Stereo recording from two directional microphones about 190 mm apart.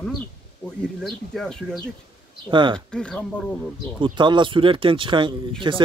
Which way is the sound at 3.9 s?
25° right (ahead or behind).